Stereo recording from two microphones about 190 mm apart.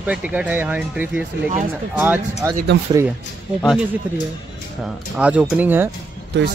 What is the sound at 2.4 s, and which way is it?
Speech, 15° right (ahead or behind).